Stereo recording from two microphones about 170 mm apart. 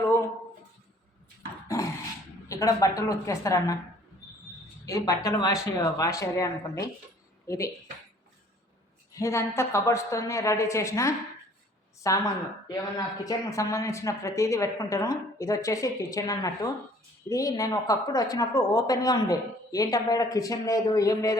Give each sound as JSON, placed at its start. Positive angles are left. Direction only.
{"t": 1.6, "sound": "dog", "side_deg": 20}
{"t": 2.5, "sound": "a woman's voice", "side_deg": 20}
{"t": 4.9, "sound": "a woman's voice", "side_deg": 20}
{"t": 9.1, "sound": "a woman's voice", "side_deg": 15}